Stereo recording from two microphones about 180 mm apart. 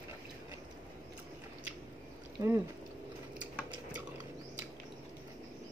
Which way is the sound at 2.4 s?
25° right (ahead or behind).